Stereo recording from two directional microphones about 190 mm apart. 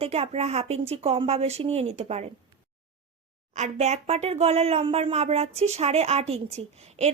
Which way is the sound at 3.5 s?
35° right (ahead or behind).